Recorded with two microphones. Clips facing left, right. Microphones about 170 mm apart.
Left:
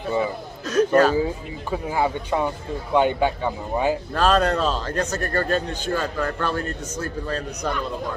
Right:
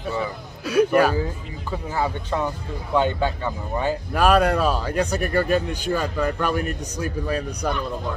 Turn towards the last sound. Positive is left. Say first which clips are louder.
# right 2 dB
turn(degrees=-10)  # may be behind; listen again after turning